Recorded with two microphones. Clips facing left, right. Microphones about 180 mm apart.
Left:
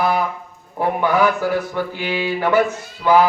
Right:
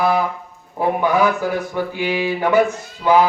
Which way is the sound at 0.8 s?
15° right (ahead or behind).